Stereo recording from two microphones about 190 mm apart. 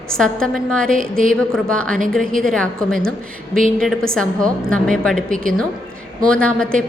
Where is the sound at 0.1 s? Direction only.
5° left (ahead or behind).